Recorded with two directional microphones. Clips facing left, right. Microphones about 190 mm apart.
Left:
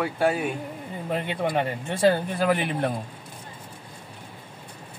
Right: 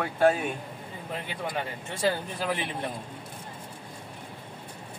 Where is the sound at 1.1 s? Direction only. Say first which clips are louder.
Left 8 dB; 65° left (ahead or behind).